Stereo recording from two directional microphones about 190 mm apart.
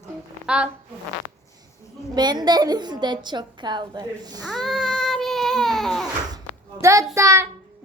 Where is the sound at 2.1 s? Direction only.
20° right (ahead or behind).